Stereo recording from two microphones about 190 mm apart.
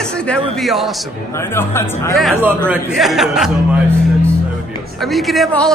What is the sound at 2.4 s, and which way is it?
Speech, 10° right (ahead or behind).